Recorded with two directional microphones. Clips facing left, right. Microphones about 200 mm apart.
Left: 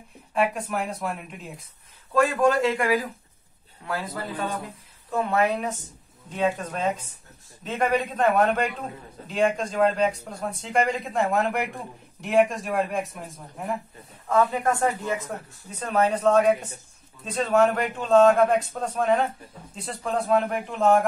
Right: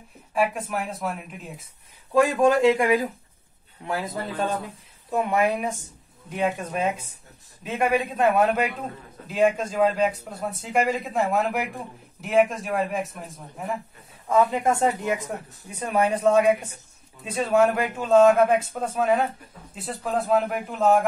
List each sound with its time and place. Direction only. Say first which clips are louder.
0.3 s speech: even; centre (ahead or behind)
2.1 s speech: right 2 dB; 15° right (ahead or behind)
14.3 s speech: right 1 dB; 20° right (ahead or behind); by 21.0 s 5° right (ahead or behind)